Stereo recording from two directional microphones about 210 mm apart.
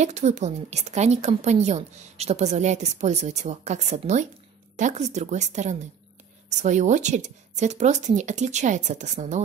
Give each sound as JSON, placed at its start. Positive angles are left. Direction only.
{"t": 0.0, "sound": "a woman's voice", "side_deg": -35}